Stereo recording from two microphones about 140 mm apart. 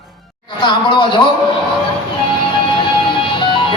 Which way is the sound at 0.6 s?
35° left (ahead or behind).